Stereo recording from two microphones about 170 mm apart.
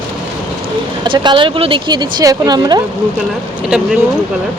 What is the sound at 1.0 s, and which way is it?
Speech, 30° right (ahead or behind).